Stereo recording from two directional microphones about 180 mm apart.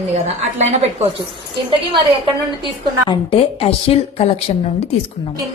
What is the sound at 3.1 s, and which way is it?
A woman's voice, 30° left (ahead or behind).